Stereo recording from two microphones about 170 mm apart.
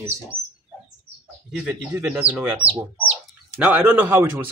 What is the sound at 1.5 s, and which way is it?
Speech, 10° right (ahead or behind).